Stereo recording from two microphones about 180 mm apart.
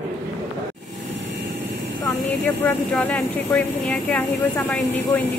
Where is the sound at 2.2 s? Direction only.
10° left (ahead or behind).